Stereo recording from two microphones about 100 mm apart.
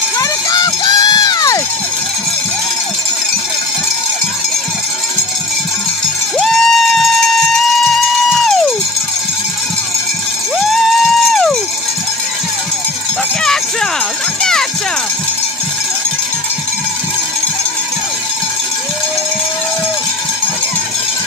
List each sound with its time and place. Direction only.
0.2 s run: 40° left (ahead or behind)
6.3 s music: 5° left (ahead or behind)
10.7 s music: centre (ahead or behind)
14.4 s music: 5° left (ahead or behind)